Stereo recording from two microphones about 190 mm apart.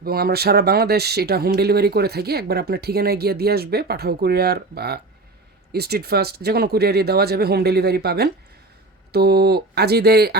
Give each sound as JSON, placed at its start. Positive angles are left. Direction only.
{"t": 0.0, "sound": "speech", "side_deg": -55}